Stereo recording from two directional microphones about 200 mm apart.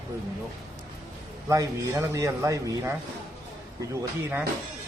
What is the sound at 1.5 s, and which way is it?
Speech, 15° right (ahead or behind).